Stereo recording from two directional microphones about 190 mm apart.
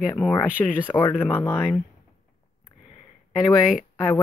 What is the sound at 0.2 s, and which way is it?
Speech, 10° left (ahead or behind).